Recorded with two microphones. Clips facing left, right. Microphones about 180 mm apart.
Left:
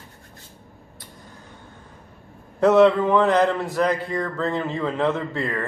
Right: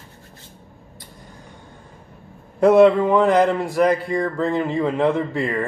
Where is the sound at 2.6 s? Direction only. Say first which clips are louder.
Right 3 dB; 10° right (ahead or behind).